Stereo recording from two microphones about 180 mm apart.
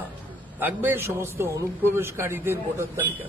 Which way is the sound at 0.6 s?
10° right (ahead or behind).